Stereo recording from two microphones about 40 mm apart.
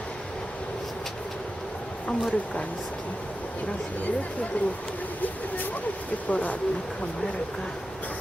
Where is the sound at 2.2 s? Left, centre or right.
Left.